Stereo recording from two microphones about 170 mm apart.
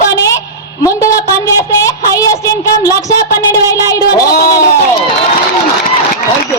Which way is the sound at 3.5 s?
20° left (ahead or behind).